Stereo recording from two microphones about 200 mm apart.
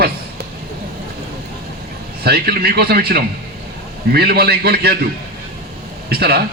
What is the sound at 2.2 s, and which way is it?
A man's voice, 50° right (ahead or behind).